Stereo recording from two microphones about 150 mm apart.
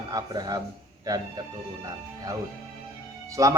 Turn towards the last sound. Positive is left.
turn(degrees=-20)  # may be behind; listen again after turning